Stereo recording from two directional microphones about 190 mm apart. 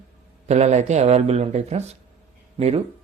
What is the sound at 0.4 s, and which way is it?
Speech, 35° right (ahead or behind).